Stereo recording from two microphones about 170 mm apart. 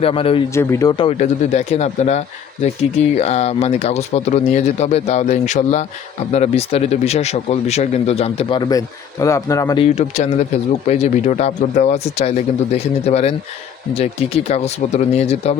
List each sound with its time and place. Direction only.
0.0 s speech: 35° left (ahead or behind)
0.5 s speech: 15° left (ahead or behind)
1.2 s speech: 40° left (ahead or behind); by 9.8 s 20° left (ahead or behind)
9.8 s speech: 45° left (ahead or behind)